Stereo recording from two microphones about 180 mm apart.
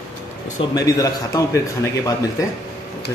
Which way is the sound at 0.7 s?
20° left (ahead or behind).